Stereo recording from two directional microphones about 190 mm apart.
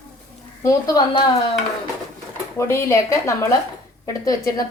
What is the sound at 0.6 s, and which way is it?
Speech, 15° left (ahead or behind).